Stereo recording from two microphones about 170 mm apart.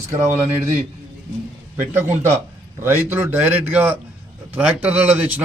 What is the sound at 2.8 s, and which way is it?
Speech, 15° right (ahead or behind).